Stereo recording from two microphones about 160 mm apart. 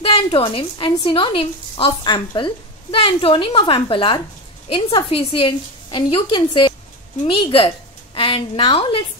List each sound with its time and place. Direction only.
0.0 s a woman's voice: 35° left (ahead or behind)